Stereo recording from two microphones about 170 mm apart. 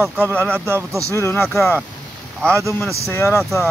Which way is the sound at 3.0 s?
15° left (ahead or behind).